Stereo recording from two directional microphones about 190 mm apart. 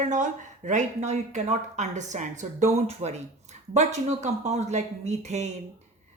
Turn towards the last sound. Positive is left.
turn(degrees=-35)  # may be behind; listen again after turning